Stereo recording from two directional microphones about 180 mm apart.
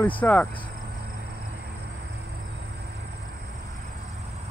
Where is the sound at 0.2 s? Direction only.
10° left (ahead or behind).